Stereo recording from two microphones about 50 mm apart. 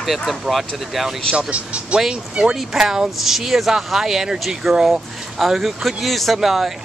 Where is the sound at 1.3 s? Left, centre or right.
Right.